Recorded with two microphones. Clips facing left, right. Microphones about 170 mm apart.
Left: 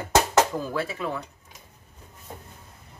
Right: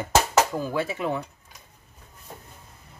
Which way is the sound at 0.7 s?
20° right (ahead or behind).